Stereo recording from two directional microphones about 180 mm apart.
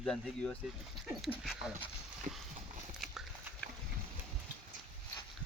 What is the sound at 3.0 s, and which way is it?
Dog, centre (ahead or behind).